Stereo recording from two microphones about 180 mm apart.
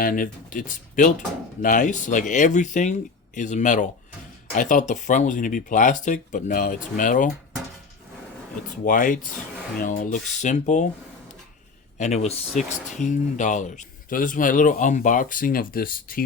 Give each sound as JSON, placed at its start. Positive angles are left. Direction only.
{"t": 0.0, "sound": "speech", "side_deg": 50}
{"t": 8.8, "sound": "speech", "side_deg": 45}
{"t": 11.9, "sound": "speech", "side_deg": 40}